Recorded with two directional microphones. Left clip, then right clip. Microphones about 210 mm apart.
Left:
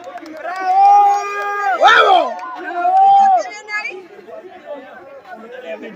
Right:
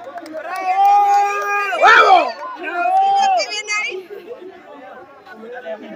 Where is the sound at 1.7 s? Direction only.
Centre (ahead or behind).